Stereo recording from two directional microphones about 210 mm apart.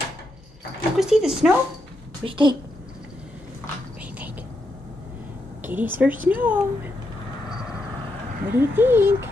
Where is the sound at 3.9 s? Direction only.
5° right (ahead or behind).